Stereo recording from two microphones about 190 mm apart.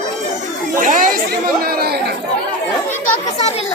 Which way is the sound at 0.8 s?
45° right (ahead or behind).